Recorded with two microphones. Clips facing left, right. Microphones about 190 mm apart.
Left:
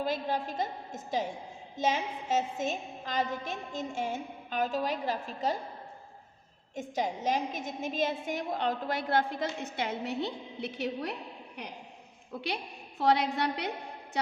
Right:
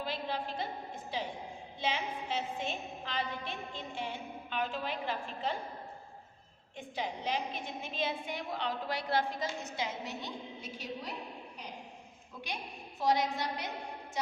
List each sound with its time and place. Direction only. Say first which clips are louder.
0.0 s a woman's voice: left 5 dB; 45° left (ahead or behind)
6.7 s a woman's voice: left 6 dB; 45° left (ahead or behind); by 11.1 s 65° left (ahead or behind)
13.0 s a woman's voice: left 4 dB; 65° left (ahead or behind)